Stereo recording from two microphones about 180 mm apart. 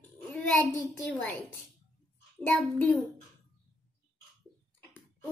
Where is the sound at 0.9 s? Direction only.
5° left (ahead or behind).